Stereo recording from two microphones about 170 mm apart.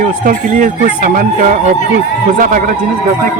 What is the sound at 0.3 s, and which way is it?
Speech, 55° right (ahead or behind).